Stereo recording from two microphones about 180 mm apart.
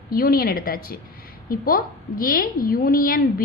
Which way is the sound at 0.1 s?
55° left (ahead or behind).